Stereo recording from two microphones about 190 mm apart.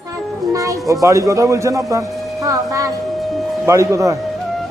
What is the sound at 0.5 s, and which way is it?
A child's voice, 15° right (ahead or behind).